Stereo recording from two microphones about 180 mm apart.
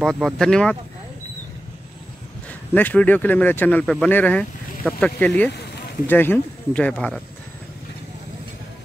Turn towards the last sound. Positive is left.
turn(degrees=5)  # may be behind; listen again after turning